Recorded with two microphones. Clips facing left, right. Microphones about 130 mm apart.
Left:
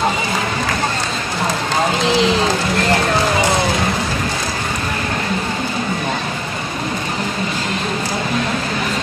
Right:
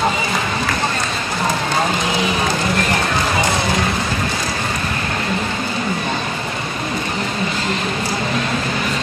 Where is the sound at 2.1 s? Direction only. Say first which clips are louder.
Left 4 dB; 90° left.